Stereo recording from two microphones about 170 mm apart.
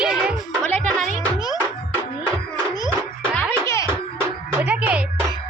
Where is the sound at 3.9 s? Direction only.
15° right (ahead or behind).